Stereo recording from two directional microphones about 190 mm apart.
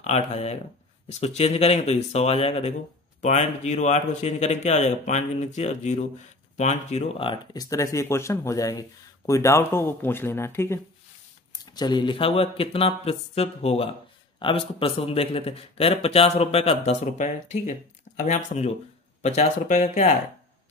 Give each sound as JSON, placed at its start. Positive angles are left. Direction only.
{"t": 0.0, "sound": "a man's voice", "side_deg": 35}